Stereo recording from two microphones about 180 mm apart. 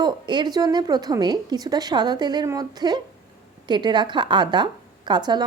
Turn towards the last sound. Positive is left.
turn(degrees=-25)  # may be behind; listen again after turning